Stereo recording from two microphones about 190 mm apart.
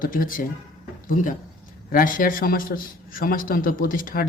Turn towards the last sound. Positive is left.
turn(degrees=50)  # may be behind; listen again after turning